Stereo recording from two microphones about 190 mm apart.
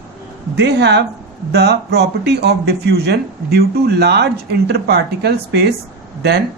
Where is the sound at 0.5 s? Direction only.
65° right (ahead or behind).